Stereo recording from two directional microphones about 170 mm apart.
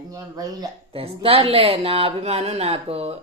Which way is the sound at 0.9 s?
35° right (ahead or behind).